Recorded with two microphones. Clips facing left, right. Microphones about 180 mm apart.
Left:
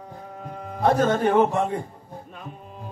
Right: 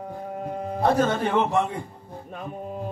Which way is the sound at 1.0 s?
45° left (ahead or behind).